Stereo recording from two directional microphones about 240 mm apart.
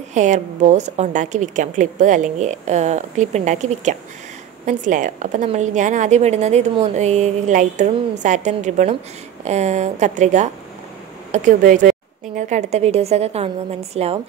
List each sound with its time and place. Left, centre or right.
0.1 s a woman's voice: right